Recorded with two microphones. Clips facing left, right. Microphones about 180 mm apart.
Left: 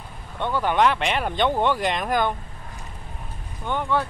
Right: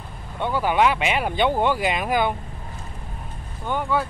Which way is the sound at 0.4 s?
10° right (ahead or behind).